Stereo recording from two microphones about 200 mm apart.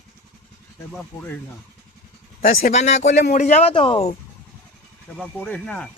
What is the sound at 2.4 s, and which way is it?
Speech, 45° left (ahead or behind).